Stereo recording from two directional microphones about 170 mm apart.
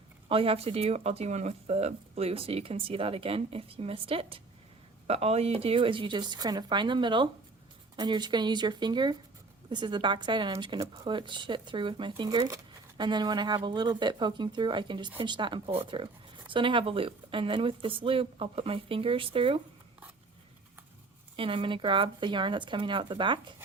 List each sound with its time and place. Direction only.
0.3 s speech: 35° right (ahead or behind)
21.3 s speech: 30° right (ahead or behind)